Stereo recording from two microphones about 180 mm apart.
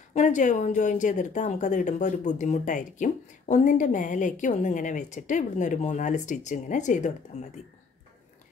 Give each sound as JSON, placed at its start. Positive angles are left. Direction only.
{"t": 0.1, "sound": "a woman's voice", "side_deg": 40}